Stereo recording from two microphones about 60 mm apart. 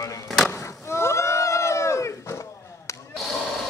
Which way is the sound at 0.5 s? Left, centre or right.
Left.